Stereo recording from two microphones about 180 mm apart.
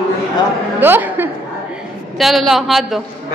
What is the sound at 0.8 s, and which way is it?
Speech, 10° right (ahead or behind).